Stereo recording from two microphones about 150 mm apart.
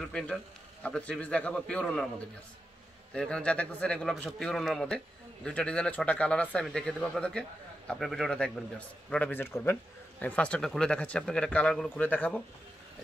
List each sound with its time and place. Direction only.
0.0 s a man's voice: 5° left (ahead or behind)
3.1 s a man's voice: 5° left (ahead or behind)